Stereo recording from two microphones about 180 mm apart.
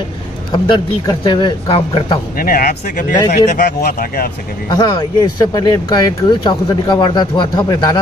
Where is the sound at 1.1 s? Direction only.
25° left (ahead or behind).